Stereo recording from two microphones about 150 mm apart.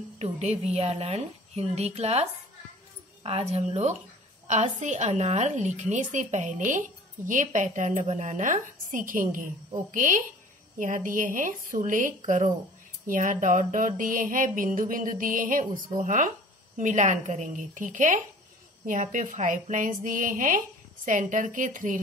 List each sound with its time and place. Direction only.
0.2 s a woman's voice: 45° right (ahead or behind)
3.3 s a woman's voice: 40° right (ahead or behind)
7.2 s mantra: 60° right (ahead or behind)